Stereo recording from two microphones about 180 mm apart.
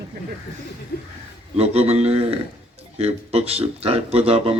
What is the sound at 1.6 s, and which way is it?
Speech, 35° right (ahead or behind).